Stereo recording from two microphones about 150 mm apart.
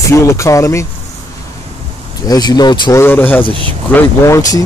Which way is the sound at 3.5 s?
35° right (ahead or behind).